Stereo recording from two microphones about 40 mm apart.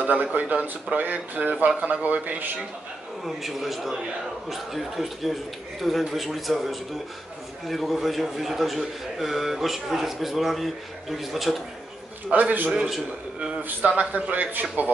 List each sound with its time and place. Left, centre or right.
0.0 s speech: right
3.3 s a man's voice: centre
12.3 s speech: right
13.9 s speech: right